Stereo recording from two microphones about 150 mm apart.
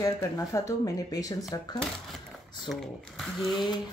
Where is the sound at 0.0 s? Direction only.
25° left (ahead or behind).